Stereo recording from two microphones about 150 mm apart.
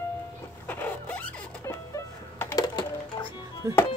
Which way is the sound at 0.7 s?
10° left (ahead or behind).